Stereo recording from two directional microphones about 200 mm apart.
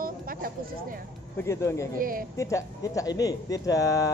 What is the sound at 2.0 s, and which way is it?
Speech, 45° right (ahead or behind).